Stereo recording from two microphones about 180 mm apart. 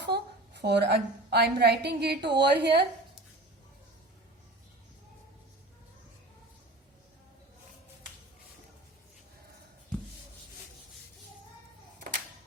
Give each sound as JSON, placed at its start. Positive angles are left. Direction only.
{"t": 0.0, "sound": "a woman's voice", "side_deg": -70}